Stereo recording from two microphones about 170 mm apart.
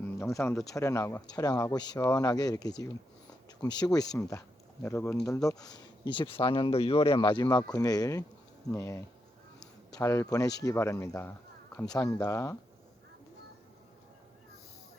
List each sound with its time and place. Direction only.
0.2 s speech: 15° left (ahead or behind)
9.6 s a sound: 20° left (ahead or behind)
10.6 s speech: 15° left (ahead or behind)